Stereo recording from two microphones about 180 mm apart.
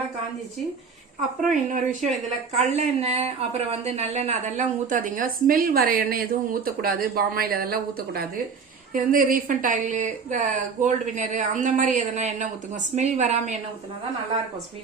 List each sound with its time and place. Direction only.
1.7 s a woman's voice: 45° right (ahead or behind)